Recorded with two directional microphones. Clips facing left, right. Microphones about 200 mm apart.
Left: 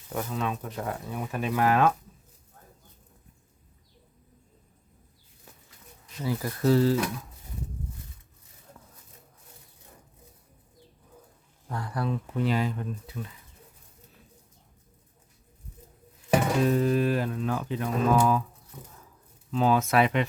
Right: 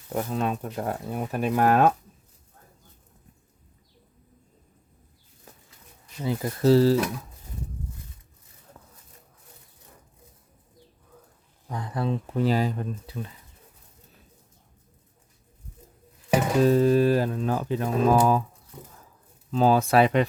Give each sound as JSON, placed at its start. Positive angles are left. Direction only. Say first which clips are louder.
{"t": 0.1, "sound": "speech", "louder": "right 4 dB", "side_deg": -30}
{"t": 6.2, "sound": "speech", "louder": "right 4 dB", "side_deg": -25}
{"t": 11.7, "sound": "speech", "louder": "right 2 dB", "side_deg": -20}
{"t": 16.6, "sound": "speech", "louder": "right 5 dB", "side_deg": -35}
{"t": 19.5, "sound": "speech", "louder": "right 3 dB", "side_deg": -35}